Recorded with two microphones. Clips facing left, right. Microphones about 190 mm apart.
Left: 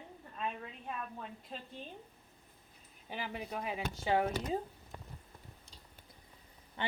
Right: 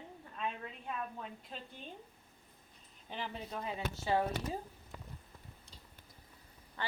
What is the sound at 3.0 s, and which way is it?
A woman's voice, 10° left (ahead or behind).